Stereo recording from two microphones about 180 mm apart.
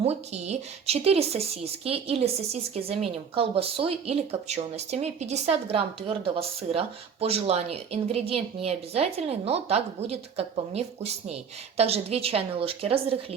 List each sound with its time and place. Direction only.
0.0 s a woman's voice: 35° right (ahead or behind)